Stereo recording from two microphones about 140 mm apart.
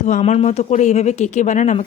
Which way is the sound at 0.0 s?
55° left (ahead or behind).